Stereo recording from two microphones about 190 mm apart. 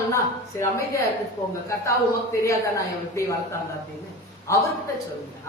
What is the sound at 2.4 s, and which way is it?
Speech, 15° left (ahead or behind).